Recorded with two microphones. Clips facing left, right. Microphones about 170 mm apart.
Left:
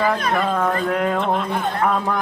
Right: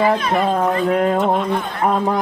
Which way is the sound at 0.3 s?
25° right (ahead or behind).